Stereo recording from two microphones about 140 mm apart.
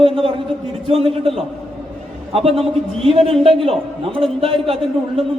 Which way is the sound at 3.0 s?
45° right (ahead or behind).